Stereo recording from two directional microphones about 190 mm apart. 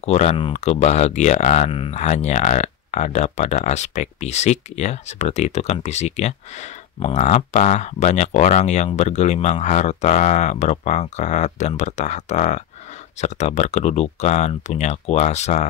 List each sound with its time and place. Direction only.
0.0 s speech: 35° left (ahead or behind)